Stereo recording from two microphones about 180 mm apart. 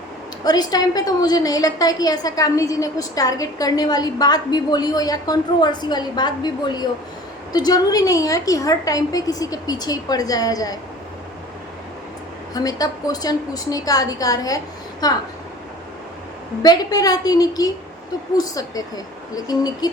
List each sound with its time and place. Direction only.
0.4 s a woman's voice: 20° left (ahead or behind)
12.5 s a woman's voice: 20° left (ahead or behind)
16.6 s a woman's voice: 20° left (ahead or behind)